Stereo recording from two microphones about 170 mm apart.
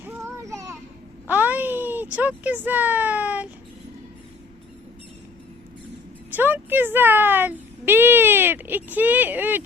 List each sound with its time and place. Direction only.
0.0 s a sound: 15° right (ahead or behind)
1.3 s speech: 10° right (ahead or behind)
6.3 s a child's voice: 10° right (ahead or behind)